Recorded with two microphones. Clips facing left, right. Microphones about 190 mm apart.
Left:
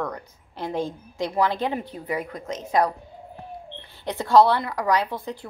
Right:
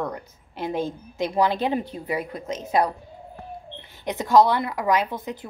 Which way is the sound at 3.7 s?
20° right (ahead or behind).